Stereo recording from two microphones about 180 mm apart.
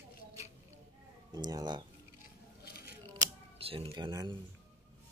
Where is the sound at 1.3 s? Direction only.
20° right (ahead or behind).